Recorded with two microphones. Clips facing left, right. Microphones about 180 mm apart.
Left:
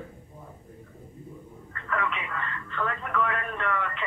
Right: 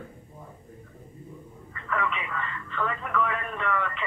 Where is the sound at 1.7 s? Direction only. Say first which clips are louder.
Right 1 dB; centre (ahead or behind).